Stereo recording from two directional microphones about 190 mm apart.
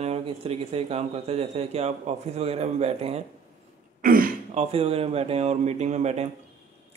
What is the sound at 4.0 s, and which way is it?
Throat clearing, 50° right (ahead or behind).